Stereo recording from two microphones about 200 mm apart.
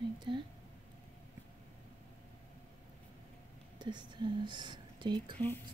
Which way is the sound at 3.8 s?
20° right (ahead or behind).